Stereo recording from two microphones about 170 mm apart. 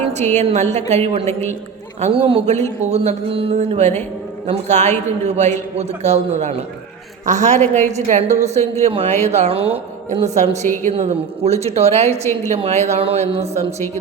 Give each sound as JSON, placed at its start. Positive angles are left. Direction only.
{"t": 0.0, "sound": "a man's voice", "side_deg": -45}
{"t": 1.3, "sound": "a woman's voice", "side_deg": 15}
{"t": 2.0, "sound": "a man's voice", "side_deg": -35}
{"t": 7.6, "sound": "a woman's voice", "side_deg": 10}
{"t": 7.9, "sound": "a man's voice", "side_deg": -40}